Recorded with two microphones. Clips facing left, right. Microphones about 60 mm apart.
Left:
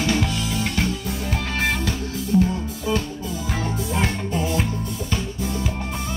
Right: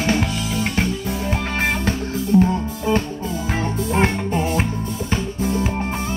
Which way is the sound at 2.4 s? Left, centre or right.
Right.